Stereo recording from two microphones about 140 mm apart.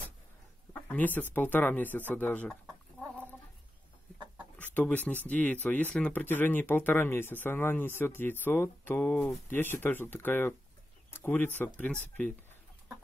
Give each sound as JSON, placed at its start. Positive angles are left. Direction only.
{"t": 0.9, "sound": "speech", "side_deg": 10}
{"t": 4.6, "sound": "speech", "side_deg": 10}